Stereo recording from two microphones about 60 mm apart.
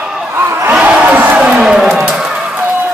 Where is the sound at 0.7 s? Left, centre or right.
Right.